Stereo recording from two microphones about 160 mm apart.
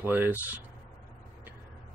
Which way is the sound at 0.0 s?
10° right (ahead or behind).